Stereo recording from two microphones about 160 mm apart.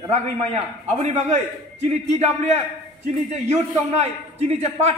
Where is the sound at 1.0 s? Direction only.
45° right (ahead or behind).